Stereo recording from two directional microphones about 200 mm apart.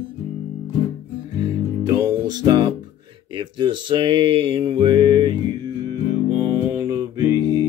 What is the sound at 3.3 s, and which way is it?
Mantra, 25° right (ahead or behind).